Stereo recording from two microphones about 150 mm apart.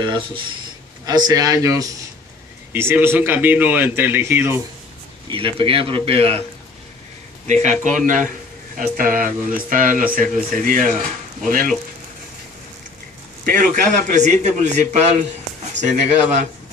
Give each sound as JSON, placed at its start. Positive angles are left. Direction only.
{"t": 0.0, "sound": "a man's voice", "side_deg": -30}
{"t": 5.6, "sound": "speech", "side_deg": -40}
{"t": 7.4, "sound": "a man's voice", "side_deg": -55}
{"t": 8.7, "sound": "speech", "side_deg": -70}
{"t": 13.5, "sound": "a man's voice", "side_deg": -80}
{"t": 14.1, "sound": "a man's voice", "side_deg": -50}